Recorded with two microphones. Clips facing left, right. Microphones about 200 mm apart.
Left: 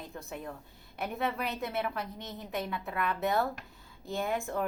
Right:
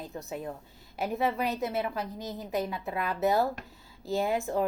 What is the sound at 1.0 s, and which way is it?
A woman's voice, centre (ahead or behind).